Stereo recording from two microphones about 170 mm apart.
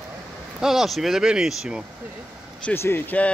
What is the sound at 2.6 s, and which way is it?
Speech, 15° left (ahead or behind).